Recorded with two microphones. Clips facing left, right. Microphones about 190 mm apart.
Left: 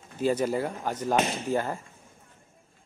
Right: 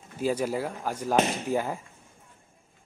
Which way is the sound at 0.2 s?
5° right (ahead or behind).